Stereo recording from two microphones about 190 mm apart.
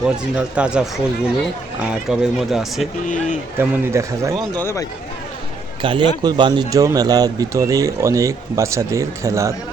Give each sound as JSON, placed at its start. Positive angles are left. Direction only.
{"t": 0.0, "sound": "speech", "side_deg": -5}
{"t": 3.6, "sound": "a man's voice", "side_deg": -15}
{"t": 4.5, "sound": "speech", "side_deg": 15}
{"t": 5.8, "sound": "a man's voice", "side_deg": -25}